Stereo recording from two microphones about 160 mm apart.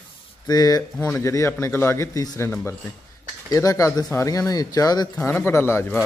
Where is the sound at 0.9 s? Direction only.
10° left (ahead or behind).